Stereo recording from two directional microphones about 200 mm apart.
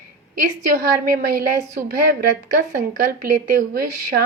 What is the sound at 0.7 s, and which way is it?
Speech, 45° right (ahead or behind).